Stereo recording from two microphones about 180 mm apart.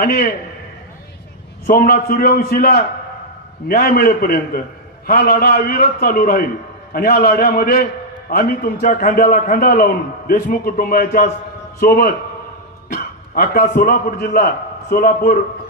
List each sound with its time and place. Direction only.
0.0 s a man's voice: 55° left (ahead or behind)
1.7 s a man's voice: 55° left (ahead or behind)